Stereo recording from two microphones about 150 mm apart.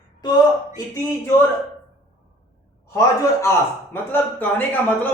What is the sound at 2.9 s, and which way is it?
A man's voice, 20° left (ahead or behind).